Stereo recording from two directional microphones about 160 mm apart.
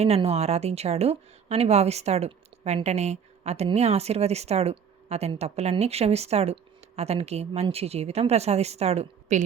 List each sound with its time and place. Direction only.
0.0 s a woman's voice: 40° right (ahead or behind)